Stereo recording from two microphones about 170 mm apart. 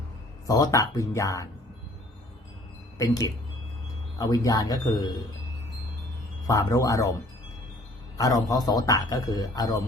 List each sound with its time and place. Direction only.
0.4 s a man's voice: 20° left (ahead or behind)
3.0 s a man's voice: 20° left (ahead or behind)
6.5 s a man's voice: 20° left (ahead or behind)
8.2 s a man's voice: 20° left (ahead or behind)